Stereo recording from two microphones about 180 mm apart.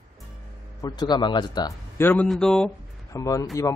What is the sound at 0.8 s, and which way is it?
Speech, 25° left (ahead or behind).